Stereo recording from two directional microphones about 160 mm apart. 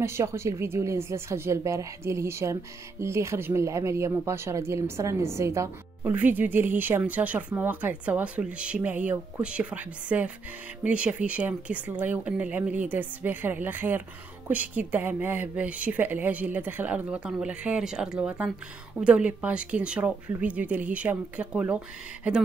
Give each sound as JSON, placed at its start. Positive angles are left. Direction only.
{"t": 0.0, "sound": "speech", "side_deg": -15}